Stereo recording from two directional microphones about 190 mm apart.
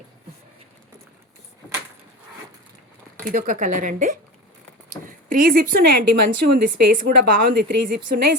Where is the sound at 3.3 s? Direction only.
45° right (ahead or behind).